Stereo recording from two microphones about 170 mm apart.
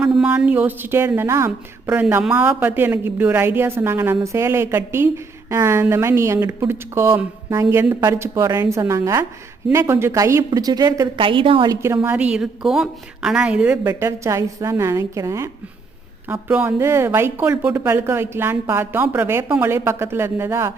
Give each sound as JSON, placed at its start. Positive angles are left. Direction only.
{"t": 0.0, "sound": "a woman's voice", "side_deg": -5}
{"t": 11.9, "sound": "a woman's voice", "side_deg": -5}